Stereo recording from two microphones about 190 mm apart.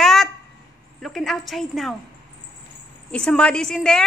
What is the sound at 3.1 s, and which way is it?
Speech, 5° left (ahead or behind).